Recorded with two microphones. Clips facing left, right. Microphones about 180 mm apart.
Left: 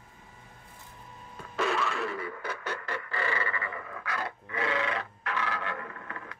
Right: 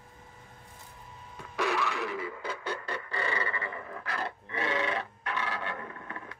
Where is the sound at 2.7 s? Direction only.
20° right (ahead or behind).